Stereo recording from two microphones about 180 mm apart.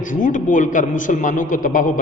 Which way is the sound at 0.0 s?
45° left (ahead or behind).